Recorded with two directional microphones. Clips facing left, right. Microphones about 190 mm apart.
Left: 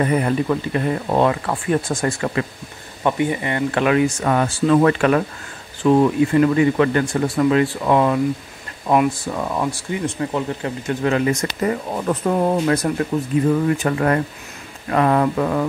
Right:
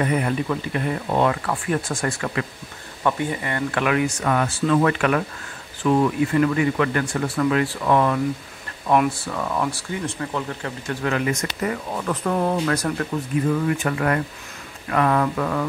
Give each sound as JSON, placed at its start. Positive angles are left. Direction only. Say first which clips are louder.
{"t": 0.0, "sound": "speech", "louder": "left 4 dB", "side_deg": 35}
{"t": 1.3, "sound": "speech", "louder": "left 4 dB", "side_deg": 25}
{"t": 8.9, "sound": "speech", "louder": "left 2 dB", "side_deg": 5}
{"t": 9.3, "sound": "speech", "louder": "left 2 dB", "side_deg": 20}